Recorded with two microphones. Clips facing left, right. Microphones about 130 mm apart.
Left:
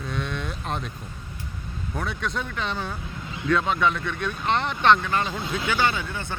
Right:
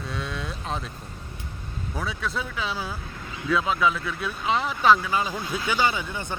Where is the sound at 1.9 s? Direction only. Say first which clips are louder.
Left 1 dB; centre (ahead or behind).